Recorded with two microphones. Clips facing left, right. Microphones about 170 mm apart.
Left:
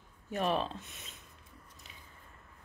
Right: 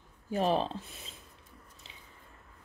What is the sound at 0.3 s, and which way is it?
Speech, 30° right (ahead or behind).